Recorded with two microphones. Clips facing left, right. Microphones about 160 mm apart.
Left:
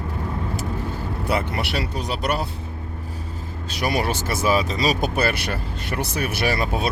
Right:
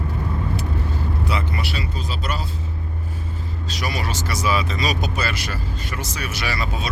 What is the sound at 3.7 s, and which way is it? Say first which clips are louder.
Speech: left 5 dB; 55° left (ahead or behind).